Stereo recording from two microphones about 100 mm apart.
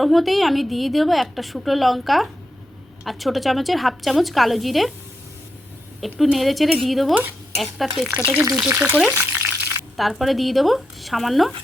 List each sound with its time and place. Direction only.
0.0 s a woman's voice: centre (ahead or behind)
6.0 s a woman's voice: centre (ahead or behind)
7.1 s speech: 15° right (ahead or behind)
7.5 s a woman's voice: centre (ahead or behind)
8.1 s speech: 20° right (ahead or behind)
9.0 s frying: 20° right (ahead or behind)
10.0 s a woman's voice: centre (ahead or behind)